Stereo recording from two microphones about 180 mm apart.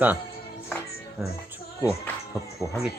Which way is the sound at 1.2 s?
Centre (ahead or behind).